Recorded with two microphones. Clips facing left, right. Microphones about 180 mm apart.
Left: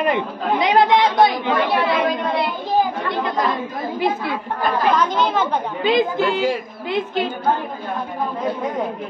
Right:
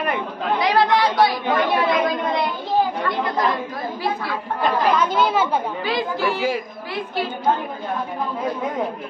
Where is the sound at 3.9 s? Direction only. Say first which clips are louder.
Left 5 dB; 20° left (ahead or behind).